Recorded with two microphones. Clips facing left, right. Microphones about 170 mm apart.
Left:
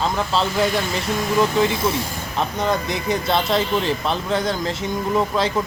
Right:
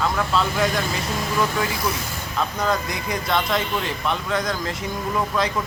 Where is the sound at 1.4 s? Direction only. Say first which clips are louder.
Left 5 dB; 25° left (ahead or behind).